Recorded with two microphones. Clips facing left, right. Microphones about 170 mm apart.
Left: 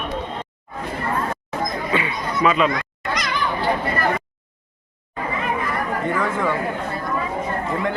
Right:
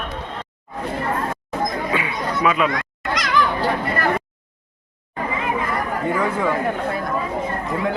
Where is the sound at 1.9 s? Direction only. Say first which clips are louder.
Even; 5° right (ahead or behind).